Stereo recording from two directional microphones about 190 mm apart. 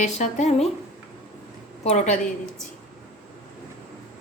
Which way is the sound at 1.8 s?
35° left (ahead or behind).